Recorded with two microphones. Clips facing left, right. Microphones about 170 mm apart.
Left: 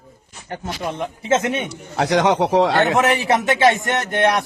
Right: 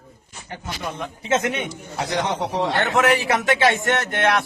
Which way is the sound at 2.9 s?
20° left (ahead or behind).